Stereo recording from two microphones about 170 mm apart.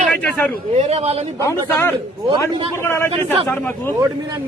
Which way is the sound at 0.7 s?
40° right (ahead or behind).